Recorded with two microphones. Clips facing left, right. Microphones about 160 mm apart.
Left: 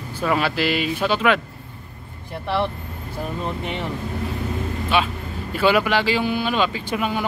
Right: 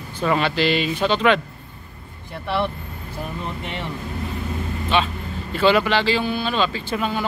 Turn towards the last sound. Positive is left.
turn(degrees=15)  # may be behind; listen again after turning